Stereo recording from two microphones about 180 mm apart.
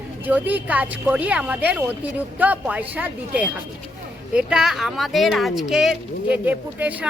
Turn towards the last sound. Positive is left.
turn(degrees=-10)  # may be behind; listen again after turning